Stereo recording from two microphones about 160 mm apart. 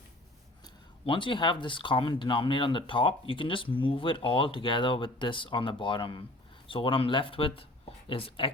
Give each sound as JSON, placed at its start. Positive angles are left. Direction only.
{"t": 0.6, "sound": "speech", "side_deg": 30}